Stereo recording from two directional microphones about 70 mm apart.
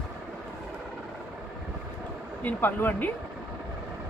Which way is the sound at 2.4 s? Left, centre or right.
Left.